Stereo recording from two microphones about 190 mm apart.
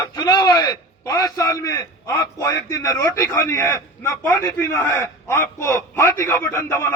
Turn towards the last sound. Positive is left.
turn(degrees=10)  # may be behind; listen again after turning